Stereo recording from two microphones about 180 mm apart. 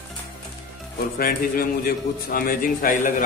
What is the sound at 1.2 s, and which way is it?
A man's voice, 55° left (ahead or behind).